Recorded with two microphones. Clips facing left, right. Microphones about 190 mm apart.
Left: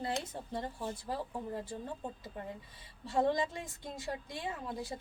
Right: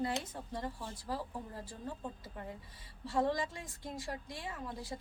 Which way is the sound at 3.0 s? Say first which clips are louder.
Left 2 dB; 25° left (ahead or behind).